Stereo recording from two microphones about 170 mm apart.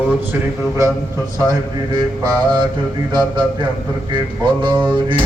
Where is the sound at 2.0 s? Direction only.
25° right (ahead or behind).